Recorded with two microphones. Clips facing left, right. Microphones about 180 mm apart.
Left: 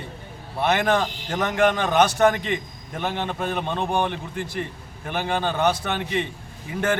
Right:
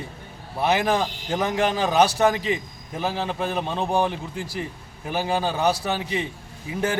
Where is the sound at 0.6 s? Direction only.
10° right (ahead or behind).